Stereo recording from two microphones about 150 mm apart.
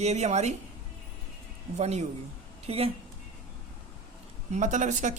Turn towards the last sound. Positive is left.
turn(degrees=-55)  # may be behind; listen again after turning